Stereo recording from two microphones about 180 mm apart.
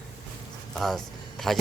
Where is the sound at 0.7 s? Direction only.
Centre (ahead or behind).